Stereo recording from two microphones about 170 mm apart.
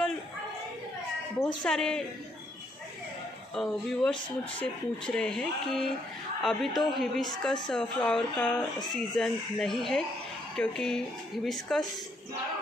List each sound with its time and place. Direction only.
1.6 s speech: 5° left (ahead or behind)
3.5 s speech: 5° left (ahead or behind)